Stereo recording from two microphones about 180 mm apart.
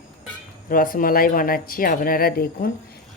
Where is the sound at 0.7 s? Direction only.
50° left (ahead or behind).